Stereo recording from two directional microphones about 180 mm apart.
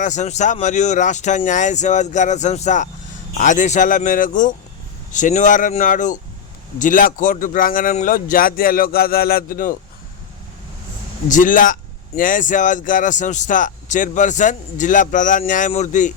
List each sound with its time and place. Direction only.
0.0 s speech: 40° left (ahead or behind)
11.3 s speech: 45° left (ahead or behind)